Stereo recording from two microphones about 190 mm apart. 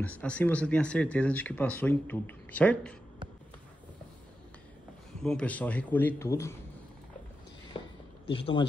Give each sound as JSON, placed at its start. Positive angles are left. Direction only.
{"t": 0.0, "sound": "speech", "side_deg": 5}
{"t": 5.2, "sound": "speech", "side_deg": 5}
{"t": 7.7, "sound": "a sound", "side_deg": 30}
{"t": 8.3, "sound": "speech", "side_deg": 30}